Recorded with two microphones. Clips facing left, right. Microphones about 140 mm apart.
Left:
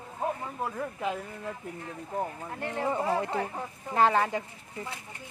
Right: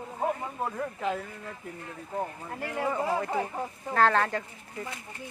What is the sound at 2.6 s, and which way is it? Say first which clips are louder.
Speech: even; 5° right (ahead or behind).